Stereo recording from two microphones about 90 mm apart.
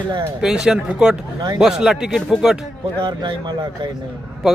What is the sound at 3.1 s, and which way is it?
Speech, 55° right (ahead or behind).